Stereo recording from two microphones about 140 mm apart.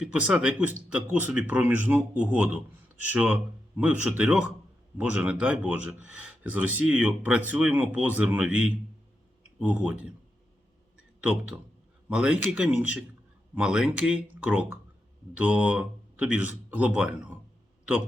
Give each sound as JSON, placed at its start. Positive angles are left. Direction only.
{"t": 0.0, "sound": "speech", "side_deg": -10}
{"t": 11.2, "sound": "speech", "side_deg": -10}